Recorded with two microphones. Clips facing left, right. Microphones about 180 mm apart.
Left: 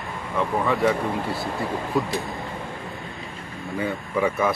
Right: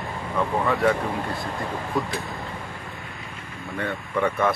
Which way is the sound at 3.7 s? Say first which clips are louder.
Left 2 dB; 5° left (ahead or behind).